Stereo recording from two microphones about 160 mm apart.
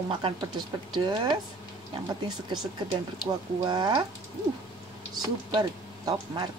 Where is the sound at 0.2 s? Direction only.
25° right (ahead or behind).